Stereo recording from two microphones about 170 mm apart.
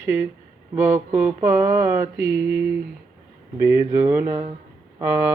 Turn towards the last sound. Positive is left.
turn(degrees=-10)  # may be behind; listen again after turning